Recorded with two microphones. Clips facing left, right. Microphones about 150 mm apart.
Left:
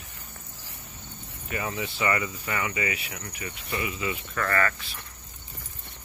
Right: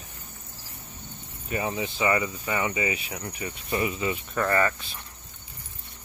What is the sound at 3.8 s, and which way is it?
Speech, 35° right (ahead or behind).